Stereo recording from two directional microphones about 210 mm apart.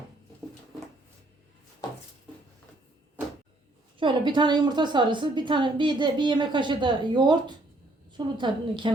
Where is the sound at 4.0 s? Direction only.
20° right (ahead or behind).